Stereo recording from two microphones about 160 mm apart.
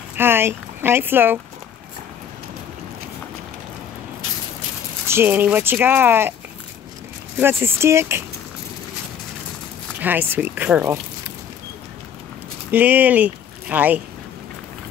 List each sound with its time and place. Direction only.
0.2 s speech: 15° right (ahead or behind)
5.0 s speech: 15° right (ahead or behind)
7.3 s speech: 15° right (ahead or behind)
9.9 s speech: 10° right (ahead or behind)
12.7 s speech: 10° right (ahead or behind)